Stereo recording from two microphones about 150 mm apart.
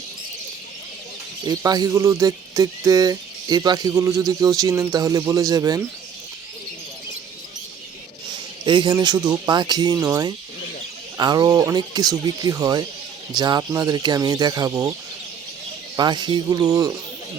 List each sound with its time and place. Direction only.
1.5 s speech: 25° right (ahead or behind)
8.6 s speech: 30° right (ahead or behind)
16.0 s speech: 30° right (ahead or behind)